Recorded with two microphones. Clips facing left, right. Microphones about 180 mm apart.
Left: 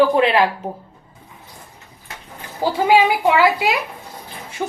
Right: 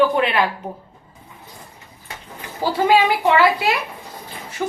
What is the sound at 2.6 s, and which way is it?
A woman's voice, 10° left (ahead or behind).